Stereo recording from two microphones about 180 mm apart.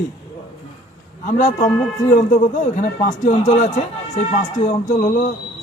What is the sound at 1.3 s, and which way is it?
A man's voice, 45° left (ahead or behind).